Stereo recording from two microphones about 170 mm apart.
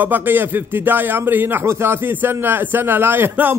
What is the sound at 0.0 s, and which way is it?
A man's voice, 10° right (ahead or behind).